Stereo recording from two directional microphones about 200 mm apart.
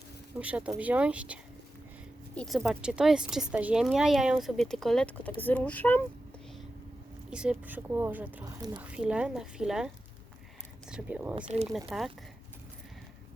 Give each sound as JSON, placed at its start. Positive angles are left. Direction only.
{"t": 0.3, "sound": "speech", "side_deg": -5}
{"t": 2.3, "sound": "speech", "side_deg": 5}
{"t": 7.3, "sound": "speech", "side_deg": -5}
{"t": 11.4, "sound": "speech", "side_deg": -35}
{"t": 11.9, "sound": "speech", "side_deg": 0}